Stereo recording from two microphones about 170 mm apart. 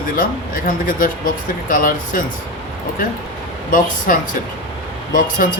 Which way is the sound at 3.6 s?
50° left (ahead or behind).